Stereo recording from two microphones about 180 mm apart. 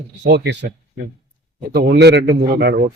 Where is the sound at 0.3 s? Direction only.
70° right (ahead or behind).